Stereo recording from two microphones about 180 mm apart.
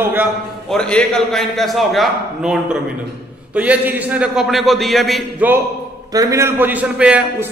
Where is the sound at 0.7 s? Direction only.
5° left (ahead or behind).